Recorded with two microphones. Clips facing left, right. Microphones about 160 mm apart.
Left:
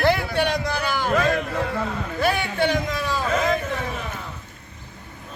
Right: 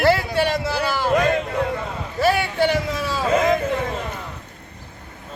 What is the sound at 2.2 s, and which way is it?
A man's voice, 5° right (ahead or behind).